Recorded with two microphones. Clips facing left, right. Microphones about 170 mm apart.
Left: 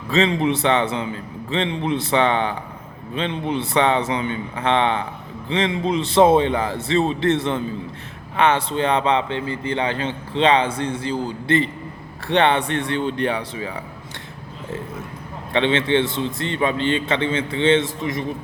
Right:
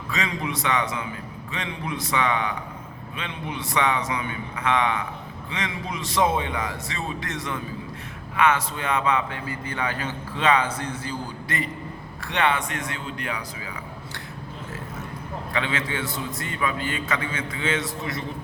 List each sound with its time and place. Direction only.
0.1 s a man's voice: 30° left (ahead or behind)
15.5 s a man's voice: 25° left (ahead or behind)